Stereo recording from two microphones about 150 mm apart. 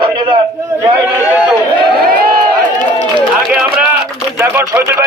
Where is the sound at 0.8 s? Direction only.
20° right (ahead or behind).